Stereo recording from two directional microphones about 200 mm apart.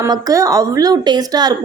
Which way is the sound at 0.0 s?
15° right (ahead or behind).